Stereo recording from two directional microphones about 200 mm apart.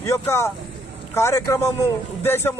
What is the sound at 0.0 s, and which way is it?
A man's voice, 15° left (ahead or behind).